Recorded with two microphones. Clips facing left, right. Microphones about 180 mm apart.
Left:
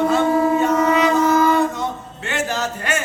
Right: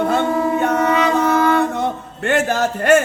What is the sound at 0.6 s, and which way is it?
Music, 60° right (ahead or behind).